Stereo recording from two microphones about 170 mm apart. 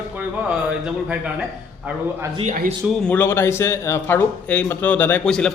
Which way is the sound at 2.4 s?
55° right (ahead or behind).